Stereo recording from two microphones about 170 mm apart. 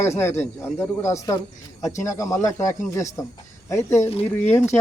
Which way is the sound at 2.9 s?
15° left (ahead or behind).